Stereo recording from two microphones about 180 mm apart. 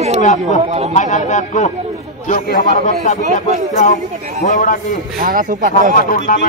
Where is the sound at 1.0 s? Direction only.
40° left (ahead or behind).